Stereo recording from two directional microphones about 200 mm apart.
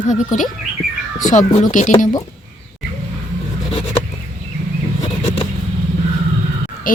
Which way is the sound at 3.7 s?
30° left (ahead or behind).